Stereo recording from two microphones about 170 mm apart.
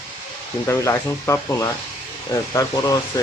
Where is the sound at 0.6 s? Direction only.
15° left (ahead or behind).